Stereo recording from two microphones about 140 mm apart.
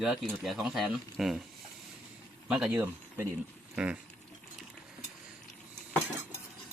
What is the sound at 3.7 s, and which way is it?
Patter, 10° right (ahead or behind).